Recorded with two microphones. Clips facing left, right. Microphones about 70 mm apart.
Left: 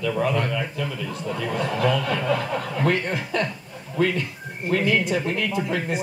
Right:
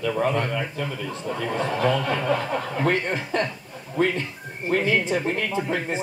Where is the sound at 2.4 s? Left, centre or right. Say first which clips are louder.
Even; centre.